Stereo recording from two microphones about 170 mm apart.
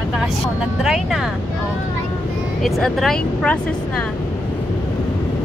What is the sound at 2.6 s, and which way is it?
Speech, centre (ahead or behind).